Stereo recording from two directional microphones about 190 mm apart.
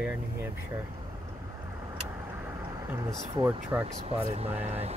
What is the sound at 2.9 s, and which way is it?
Speech, 15° right (ahead or behind).